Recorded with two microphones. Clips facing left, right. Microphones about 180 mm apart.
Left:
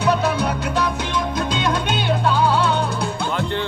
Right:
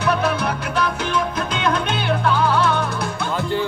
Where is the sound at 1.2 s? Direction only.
30° left (ahead or behind).